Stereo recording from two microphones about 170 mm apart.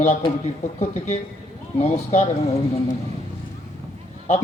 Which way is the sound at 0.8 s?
45° left (ahead or behind).